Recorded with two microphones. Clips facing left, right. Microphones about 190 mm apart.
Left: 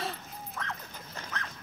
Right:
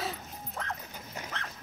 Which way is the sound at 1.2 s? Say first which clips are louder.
Right 3 dB; 15° right (ahead or behind).